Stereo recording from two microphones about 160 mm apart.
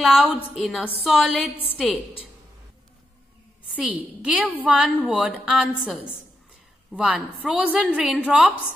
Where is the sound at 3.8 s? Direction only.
5° right (ahead or behind).